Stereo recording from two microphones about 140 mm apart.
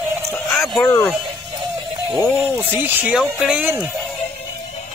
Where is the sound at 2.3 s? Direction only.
10° right (ahead or behind).